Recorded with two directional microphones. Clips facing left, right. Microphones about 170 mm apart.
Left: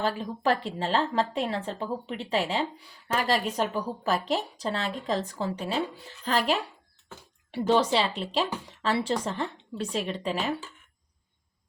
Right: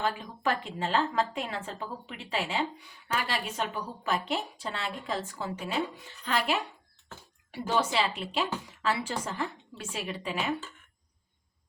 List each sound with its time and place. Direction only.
0.0 s a woman's voice: 35° left (ahead or behind)
7.7 s a woman's voice: 35° left (ahead or behind)